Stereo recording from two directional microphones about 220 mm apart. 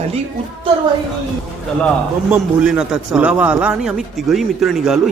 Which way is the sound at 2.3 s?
5° right (ahead or behind).